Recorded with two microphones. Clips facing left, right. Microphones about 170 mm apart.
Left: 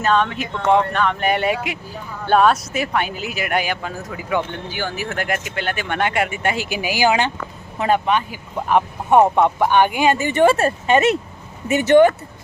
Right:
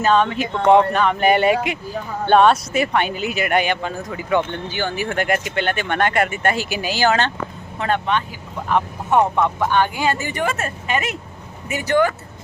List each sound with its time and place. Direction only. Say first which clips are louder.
0.0 s speech: right 2 dB; centre (ahead or behind); by 12.1 s 25° left (ahead or behind)